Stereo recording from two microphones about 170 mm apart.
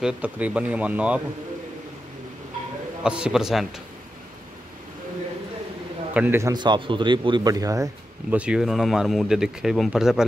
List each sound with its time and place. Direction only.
0.0 s a man's voice: 5° right (ahead or behind)
3.0 s speech: 5° right (ahead or behind)
6.1 s speech: 15° right (ahead or behind)
8.4 s speech: 5° right (ahead or behind)